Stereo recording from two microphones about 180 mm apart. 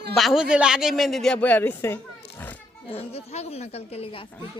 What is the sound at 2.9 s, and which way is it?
Speech, 35° left (ahead or behind).